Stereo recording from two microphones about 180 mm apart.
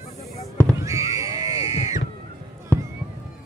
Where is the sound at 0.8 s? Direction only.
15° right (ahead or behind).